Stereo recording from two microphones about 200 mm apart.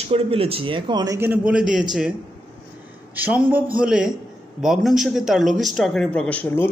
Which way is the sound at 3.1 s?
10° right (ahead or behind).